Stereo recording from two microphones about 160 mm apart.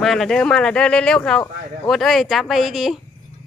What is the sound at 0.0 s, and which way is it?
Speech, centre (ahead or behind).